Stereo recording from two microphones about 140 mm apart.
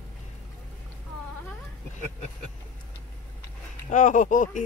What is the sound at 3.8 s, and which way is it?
Speech, 65° left (ahead or behind).